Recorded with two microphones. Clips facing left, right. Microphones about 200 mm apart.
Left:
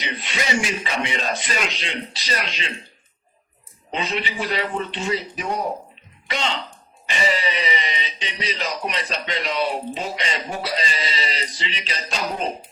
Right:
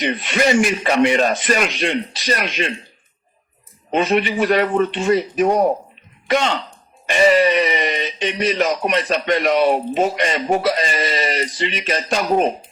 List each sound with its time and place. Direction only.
0.0 s speech: 50° right (ahead or behind)
3.9 s speech: 50° right (ahead or behind)